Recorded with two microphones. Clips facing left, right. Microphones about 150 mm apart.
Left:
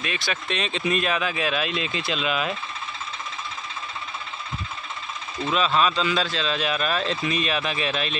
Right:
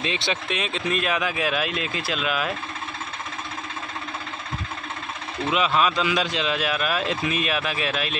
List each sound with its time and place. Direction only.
0.0 s speech: 25° right (ahead or behind)
0.5 s a man's voice: 5° right (ahead or behind)
5.5 s a man's voice: 10° right (ahead or behind)